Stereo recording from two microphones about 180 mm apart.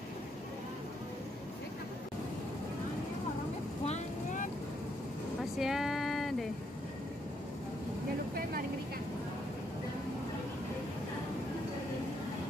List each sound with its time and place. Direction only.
3.8 s vehicle: 40° left (ahead or behind)
5.4 s vehicle: centre (ahead or behind)